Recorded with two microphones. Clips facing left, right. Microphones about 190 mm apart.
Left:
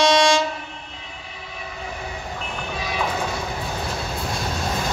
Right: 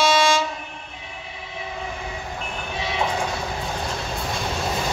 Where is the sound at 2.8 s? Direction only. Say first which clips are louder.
Right 2 dB; 25° right (ahead or behind).